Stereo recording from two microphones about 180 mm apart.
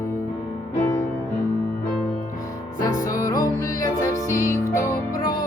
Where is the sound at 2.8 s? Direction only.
20° left (ahead or behind).